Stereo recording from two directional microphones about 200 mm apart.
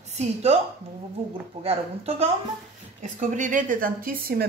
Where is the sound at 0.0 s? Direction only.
35° right (ahead or behind).